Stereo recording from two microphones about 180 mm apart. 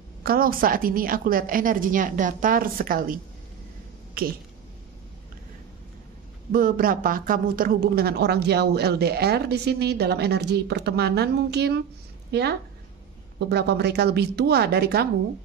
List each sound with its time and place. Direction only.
0.2 s a woman's voice: 55° right (ahead or behind)
6.5 s speech: 50° right (ahead or behind)